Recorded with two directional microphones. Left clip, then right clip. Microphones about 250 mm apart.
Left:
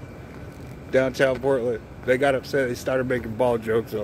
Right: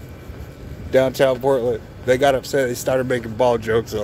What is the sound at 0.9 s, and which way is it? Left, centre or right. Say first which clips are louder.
Speech: right 4 dB; centre.